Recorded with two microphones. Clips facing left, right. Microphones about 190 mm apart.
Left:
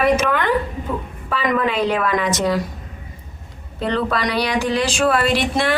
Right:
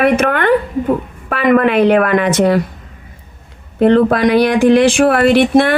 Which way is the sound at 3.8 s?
55° right (ahead or behind).